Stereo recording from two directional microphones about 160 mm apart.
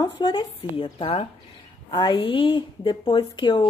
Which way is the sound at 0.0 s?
25° left (ahead or behind).